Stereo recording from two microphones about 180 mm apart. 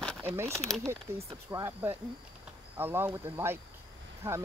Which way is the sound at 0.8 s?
15° right (ahead or behind).